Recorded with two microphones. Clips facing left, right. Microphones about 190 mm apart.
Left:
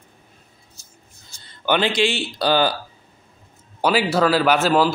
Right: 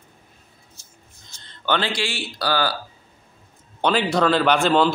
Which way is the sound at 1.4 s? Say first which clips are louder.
Left 3 dB; 10° left (ahead or behind).